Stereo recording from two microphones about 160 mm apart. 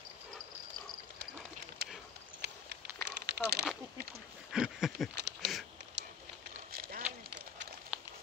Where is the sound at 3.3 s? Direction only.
90° right.